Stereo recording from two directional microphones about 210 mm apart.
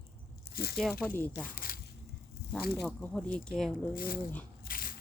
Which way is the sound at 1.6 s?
45° left (ahead or behind).